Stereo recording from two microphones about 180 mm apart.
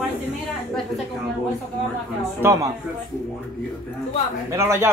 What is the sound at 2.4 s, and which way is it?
Speech, 20° right (ahead or behind).